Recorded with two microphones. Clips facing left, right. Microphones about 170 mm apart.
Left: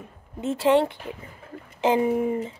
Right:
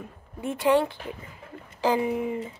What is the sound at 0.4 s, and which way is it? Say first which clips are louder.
Speech: left 2 dB; 25° left (ahead or behind).